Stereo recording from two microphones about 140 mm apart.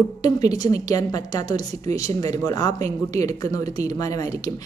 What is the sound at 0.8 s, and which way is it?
Speech, 25° left (ahead or behind).